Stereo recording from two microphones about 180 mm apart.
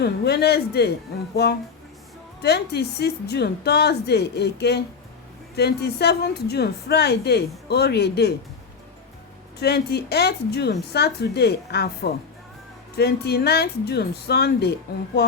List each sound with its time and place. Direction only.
0.0 s a woman's voice: 60° left (ahead or behind)
2.4 s a woman's voice: 65° left (ahead or behind)
9.6 s a woman's voice: 65° left (ahead or behind)